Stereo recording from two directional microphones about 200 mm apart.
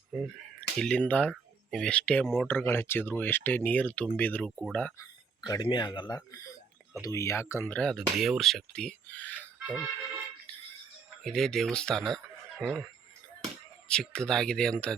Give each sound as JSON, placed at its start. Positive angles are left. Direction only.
{"t": 0.1, "sound": "speech", "side_deg": 0}
{"t": 5.5, "sound": "speech", "side_deg": 20}
{"t": 9.6, "sound": "speech", "side_deg": -5}
{"t": 11.2, "sound": "speech", "side_deg": 5}
{"t": 13.8, "sound": "speech", "side_deg": 5}